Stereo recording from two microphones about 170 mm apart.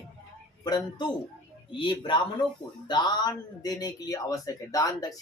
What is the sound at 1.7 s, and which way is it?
Speech, 30° left (ahead or behind).